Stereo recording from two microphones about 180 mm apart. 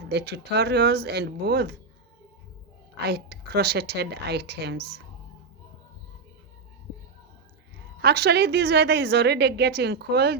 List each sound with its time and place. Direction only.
0.0 s a woman's voice: 70° right (ahead or behind)
3.0 s a woman's voice: 65° right (ahead or behind)
7.9 s a woman's voice: 65° right (ahead or behind)